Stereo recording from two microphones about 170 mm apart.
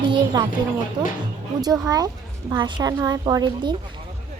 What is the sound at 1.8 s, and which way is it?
A woman's voice, 20° right (ahead or behind).